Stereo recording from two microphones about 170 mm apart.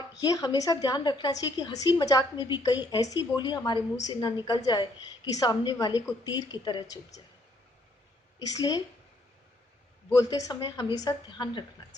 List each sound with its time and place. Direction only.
0.2 s a woman's voice: 20° left (ahead or behind)
8.4 s a woman's voice: 20° left (ahead or behind)
10.1 s a woman's voice: 20° left (ahead or behind)